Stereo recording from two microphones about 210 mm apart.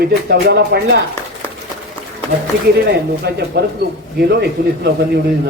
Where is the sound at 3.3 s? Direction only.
50° right (ahead or behind).